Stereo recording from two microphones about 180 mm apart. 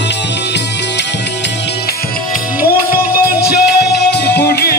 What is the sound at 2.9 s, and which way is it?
Music, 60° left (ahead or behind).